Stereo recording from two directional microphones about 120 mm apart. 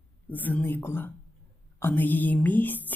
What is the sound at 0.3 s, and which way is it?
A woman's voice, 15° left (ahead or behind).